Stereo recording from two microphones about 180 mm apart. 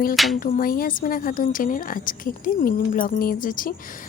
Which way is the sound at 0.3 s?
45° left (ahead or behind).